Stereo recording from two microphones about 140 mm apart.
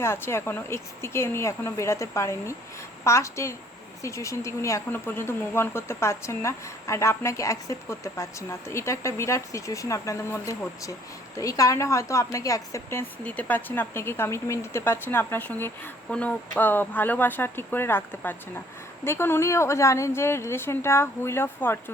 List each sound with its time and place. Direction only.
0.0 s a woman's voice: 20° left (ahead or behind)